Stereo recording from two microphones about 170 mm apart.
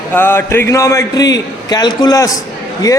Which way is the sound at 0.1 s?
15° left (ahead or behind).